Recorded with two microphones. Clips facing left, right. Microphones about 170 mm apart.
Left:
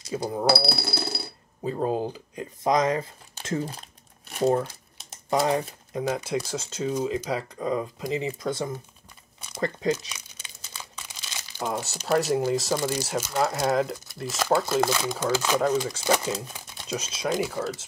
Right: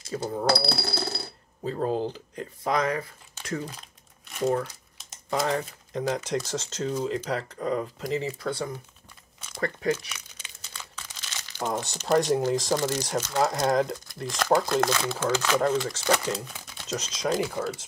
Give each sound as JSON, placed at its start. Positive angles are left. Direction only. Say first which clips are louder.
{"t": 0.0, "sound": "speech", "louder": "left 2 dB", "side_deg": 15}
{"t": 5.5, "sound": "speech", "louder": "left 2 dB", "side_deg": 10}